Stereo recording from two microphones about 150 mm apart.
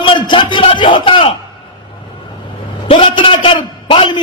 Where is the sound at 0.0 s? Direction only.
35° left (ahead or behind).